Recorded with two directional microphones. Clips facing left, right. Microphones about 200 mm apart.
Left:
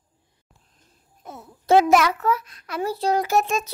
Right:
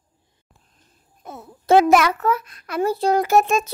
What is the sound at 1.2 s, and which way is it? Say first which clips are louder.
A child's voice: right 2 dB; 60° right (ahead or behind).